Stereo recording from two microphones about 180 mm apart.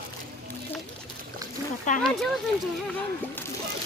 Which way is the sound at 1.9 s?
45° left (ahead or behind).